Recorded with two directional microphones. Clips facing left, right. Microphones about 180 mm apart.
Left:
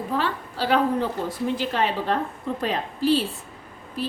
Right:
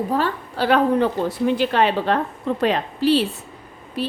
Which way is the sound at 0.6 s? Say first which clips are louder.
Right 5 dB; 60° right (ahead or behind).